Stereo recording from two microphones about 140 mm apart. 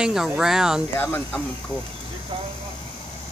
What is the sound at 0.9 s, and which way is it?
Speech, 15° left (ahead or behind).